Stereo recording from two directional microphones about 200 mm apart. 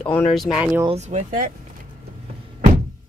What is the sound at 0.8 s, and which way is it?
Speech, 35° right (ahead or behind).